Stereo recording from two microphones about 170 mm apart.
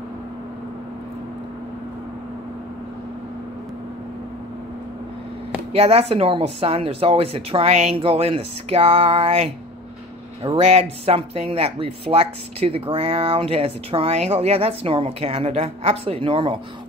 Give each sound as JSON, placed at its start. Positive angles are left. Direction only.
{"t": 5.8, "sound": "speech", "side_deg": -35}